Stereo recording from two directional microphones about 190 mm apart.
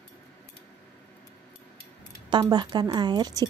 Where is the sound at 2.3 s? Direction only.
25° right (ahead or behind).